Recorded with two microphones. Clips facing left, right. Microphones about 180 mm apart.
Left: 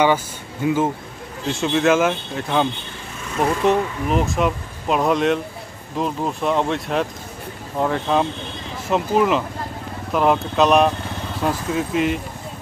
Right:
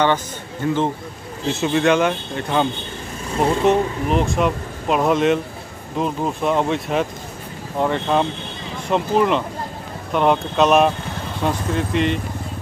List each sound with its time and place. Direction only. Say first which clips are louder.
0.0 s speech: left 1 dB; 10° left (ahead or behind)
3.3 s speech: right 2 dB; 30° right (ahead or behind)
4.1 s speech: even; centre (ahead or behind)